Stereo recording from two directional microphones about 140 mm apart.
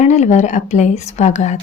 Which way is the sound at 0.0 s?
55° left (ahead or behind).